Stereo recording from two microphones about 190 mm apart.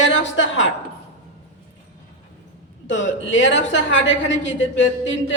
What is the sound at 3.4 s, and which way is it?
Speech, 75° left (ahead or behind).